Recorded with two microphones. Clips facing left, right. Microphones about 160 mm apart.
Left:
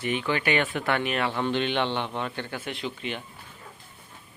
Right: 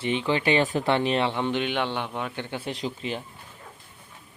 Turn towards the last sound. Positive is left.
turn(degrees=-35)  # may be behind; listen again after turning